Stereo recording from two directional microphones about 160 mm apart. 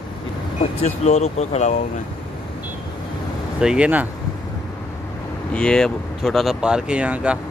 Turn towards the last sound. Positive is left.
turn(degrees=-5)  # may be behind; listen again after turning